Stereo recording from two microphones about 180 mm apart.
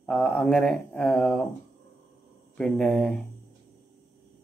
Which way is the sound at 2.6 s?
5° left (ahead or behind).